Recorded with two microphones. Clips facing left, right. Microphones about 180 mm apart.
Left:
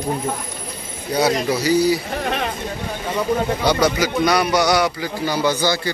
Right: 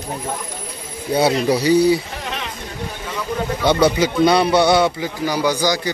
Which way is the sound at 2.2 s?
50° left (ahead or behind).